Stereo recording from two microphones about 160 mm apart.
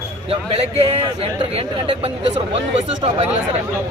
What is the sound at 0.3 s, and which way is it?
Speech, 35° right (ahead or behind).